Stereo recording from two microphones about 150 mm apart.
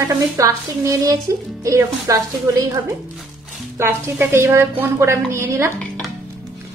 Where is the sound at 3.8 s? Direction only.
15° right (ahead or behind).